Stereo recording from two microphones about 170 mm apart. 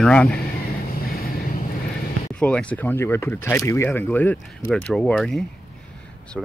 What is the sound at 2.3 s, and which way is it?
Speech, 5° left (ahead or behind).